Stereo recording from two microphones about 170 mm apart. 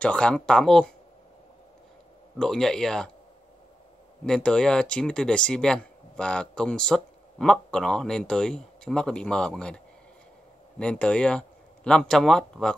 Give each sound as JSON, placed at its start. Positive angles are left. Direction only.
{"t": 0.0, "sound": "speech", "side_deg": 5}
{"t": 2.3, "sound": "speech", "side_deg": 5}
{"t": 4.2, "sound": "speech", "side_deg": 5}
{"t": 10.8, "sound": "speech", "side_deg": 5}